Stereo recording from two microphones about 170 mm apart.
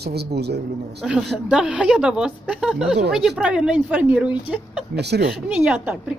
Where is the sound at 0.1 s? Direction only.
75° right (ahead or behind).